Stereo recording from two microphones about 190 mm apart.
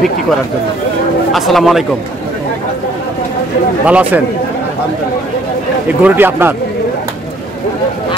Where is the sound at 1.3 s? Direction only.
Centre (ahead or behind).